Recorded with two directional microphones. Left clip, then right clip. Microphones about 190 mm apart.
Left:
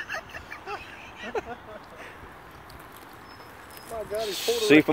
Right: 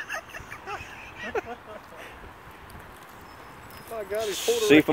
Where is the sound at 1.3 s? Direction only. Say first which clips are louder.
Right 1 dB; 40° right (ahead or behind).